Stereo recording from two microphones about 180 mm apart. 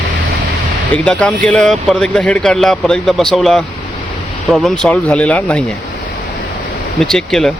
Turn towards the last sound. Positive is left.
turn(degrees=5)  # may be behind; listen again after turning